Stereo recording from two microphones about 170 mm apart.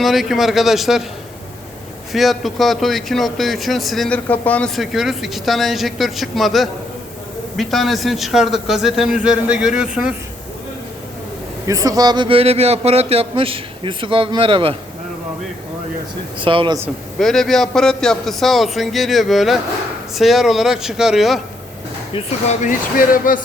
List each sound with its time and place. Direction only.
0.0 s a man's voice: centre (ahead or behind)
2.1 s a man's voice: centre (ahead or behind)
11.6 s a man's voice: 20° right (ahead or behind)
16.4 s speech: 30° right (ahead or behind)
17.2 s a man's voice: centre (ahead or behind)
22.1 s speech: 45° left (ahead or behind)